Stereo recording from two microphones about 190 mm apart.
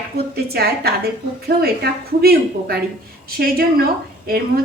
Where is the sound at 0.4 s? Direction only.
55° right (ahead or behind).